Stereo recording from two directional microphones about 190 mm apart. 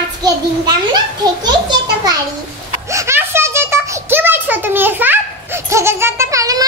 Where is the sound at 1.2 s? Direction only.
20° right (ahead or behind).